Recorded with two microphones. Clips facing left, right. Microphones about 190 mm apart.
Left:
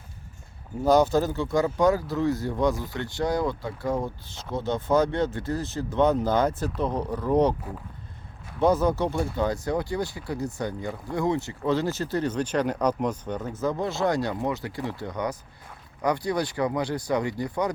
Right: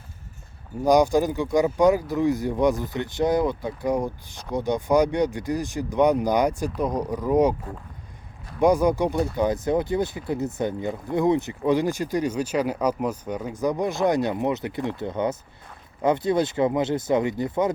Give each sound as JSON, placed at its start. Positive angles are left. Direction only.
{"t": 0.9, "sound": "speech", "side_deg": -15}
{"t": 8.5, "sound": "speech", "side_deg": -15}